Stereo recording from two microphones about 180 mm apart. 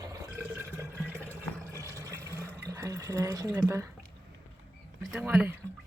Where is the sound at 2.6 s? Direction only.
15° right (ahead or behind).